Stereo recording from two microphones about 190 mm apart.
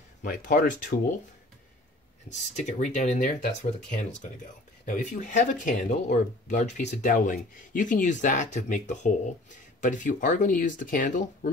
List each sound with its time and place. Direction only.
0.2 s speech: 45° left (ahead or behind)
2.2 s speech: 40° left (ahead or behind)